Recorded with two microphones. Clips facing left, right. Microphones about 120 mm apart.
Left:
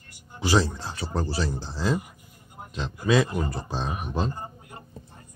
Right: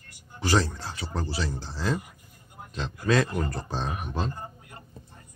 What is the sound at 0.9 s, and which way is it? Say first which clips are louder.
Speech: left 3 dB; 35° left (ahead or behind).